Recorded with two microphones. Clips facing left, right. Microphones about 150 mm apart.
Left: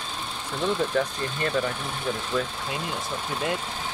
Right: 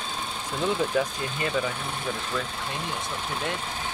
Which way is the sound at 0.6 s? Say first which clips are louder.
Even; 5° right (ahead or behind).